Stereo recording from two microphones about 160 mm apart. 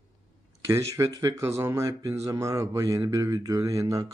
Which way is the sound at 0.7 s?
20° right (ahead or behind).